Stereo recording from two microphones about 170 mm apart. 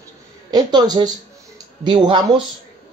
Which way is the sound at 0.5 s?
25° right (ahead or behind).